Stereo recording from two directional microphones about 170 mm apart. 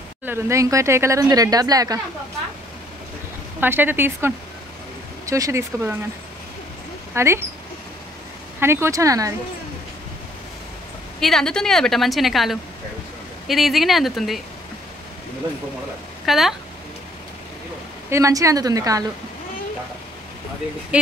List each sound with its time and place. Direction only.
0.2 s speech: 15° right (ahead or behind)
3.6 s speech: 10° right (ahead or behind)
7.2 s speech: 15° right (ahead or behind)
8.5 s speech: 15° right (ahead or behind)
11.1 s a woman's voice: centre (ahead or behind)
16.3 s speech: centre (ahead or behind)
18.1 s speech: 20° right (ahead or behind)
20.9 s speech: 5° right (ahead or behind)